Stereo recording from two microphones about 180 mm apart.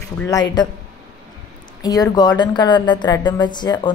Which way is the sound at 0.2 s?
20° left (ahead or behind).